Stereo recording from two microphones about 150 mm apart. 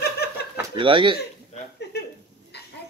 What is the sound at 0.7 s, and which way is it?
Speech, 35° right (ahead or behind).